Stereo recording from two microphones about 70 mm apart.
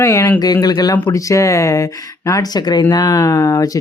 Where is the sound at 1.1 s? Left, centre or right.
Left.